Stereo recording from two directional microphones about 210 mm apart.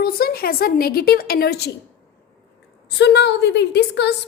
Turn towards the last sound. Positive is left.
turn(degrees=50)  # may be behind; listen again after turning